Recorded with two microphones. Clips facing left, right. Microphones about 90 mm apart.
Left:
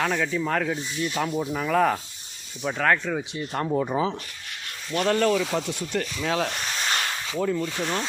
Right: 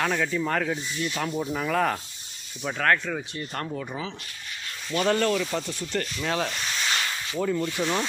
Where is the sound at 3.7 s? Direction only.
30° left (ahead or behind).